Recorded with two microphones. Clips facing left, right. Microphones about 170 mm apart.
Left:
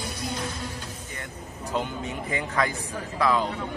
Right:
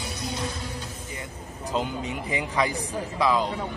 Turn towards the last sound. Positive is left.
turn(degrees=-15)  # may be behind; listen again after turning